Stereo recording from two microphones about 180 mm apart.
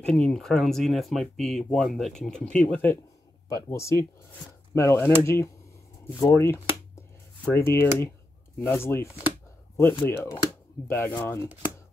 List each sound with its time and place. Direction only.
0.0 s speech: 5° left (ahead or behind)